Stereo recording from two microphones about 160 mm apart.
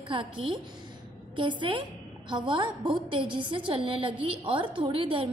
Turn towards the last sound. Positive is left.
turn(degrees=-35)  # may be behind; listen again after turning